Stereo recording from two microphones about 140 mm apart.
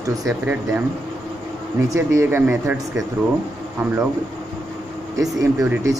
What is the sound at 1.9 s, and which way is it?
Speech, 20° right (ahead or behind).